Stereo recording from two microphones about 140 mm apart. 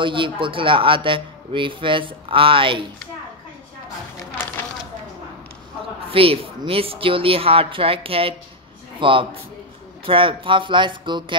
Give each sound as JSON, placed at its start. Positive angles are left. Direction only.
{"t": 0.0, "sound": "a man's voice", "side_deg": -35}
{"t": 6.1, "sound": "a man's voice", "side_deg": -40}